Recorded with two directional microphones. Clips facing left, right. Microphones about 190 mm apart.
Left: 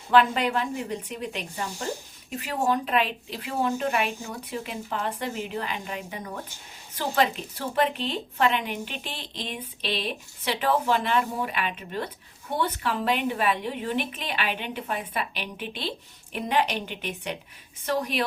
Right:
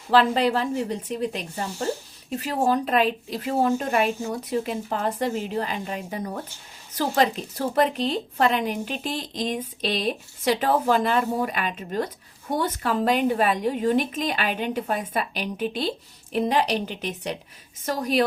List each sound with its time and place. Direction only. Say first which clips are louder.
0.1 s a woman's voice: right 2 dB; 35° right (ahead or behind)